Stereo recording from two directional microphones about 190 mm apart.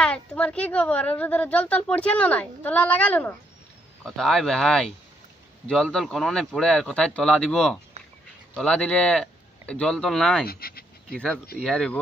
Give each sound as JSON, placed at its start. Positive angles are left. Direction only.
{"t": 0.0, "sound": "a woman's voice", "side_deg": 5}
{"t": 10.4, "sound": "pant", "side_deg": 55}
{"t": 11.6, "sound": "speech", "side_deg": 5}